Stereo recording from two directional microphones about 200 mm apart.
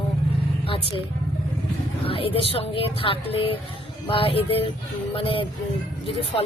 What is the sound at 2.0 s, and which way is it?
Speech, 30° left (ahead or behind).